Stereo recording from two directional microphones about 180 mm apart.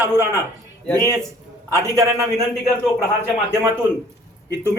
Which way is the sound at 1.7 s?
15° right (ahead or behind).